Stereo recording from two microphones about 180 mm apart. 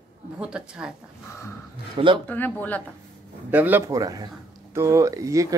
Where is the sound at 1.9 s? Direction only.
30° right (ahead or behind).